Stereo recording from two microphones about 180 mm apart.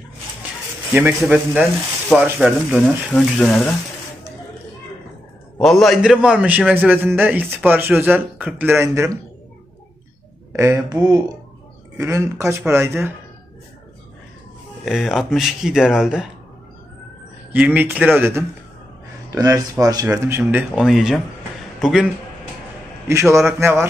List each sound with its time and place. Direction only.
0.9 s a man's voice: 10° right (ahead or behind)
5.6 s a man's voice: centre (ahead or behind); by 9.1 s 15° right (ahead or behind)
10.5 s a man's voice: 15° right (ahead or behind)
14.9 s speech: centre (ahead or behind)
17.5 s a man's voice: 10° right (ahead or behind)
23.0 s a man's voice: 15° right (ahead or behind)